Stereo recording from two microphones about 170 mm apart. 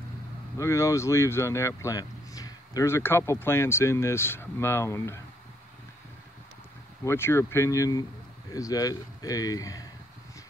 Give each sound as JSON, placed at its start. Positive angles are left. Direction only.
{"t": 0.6, "sound": "speech", "side_deg": 15}
{"t": 7.1, "sound": "speech", "side_deg": 15}